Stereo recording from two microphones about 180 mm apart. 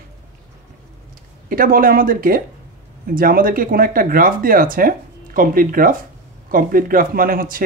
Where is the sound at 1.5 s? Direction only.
50° right (ahead or behind).